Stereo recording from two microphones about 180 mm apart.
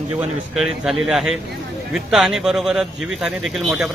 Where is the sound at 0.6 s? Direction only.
Centre (ahead or behind).